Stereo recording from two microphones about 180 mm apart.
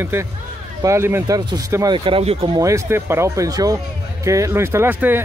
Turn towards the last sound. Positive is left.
turn(degrees=-10)  # may be behind; listen again after turning